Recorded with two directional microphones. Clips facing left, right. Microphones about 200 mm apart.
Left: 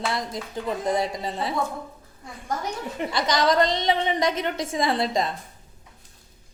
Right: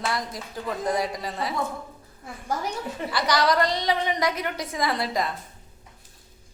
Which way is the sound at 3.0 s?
25° left (ahead or behind).